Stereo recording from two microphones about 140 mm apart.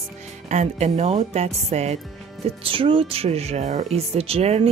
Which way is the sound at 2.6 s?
40° right (ahead or behind).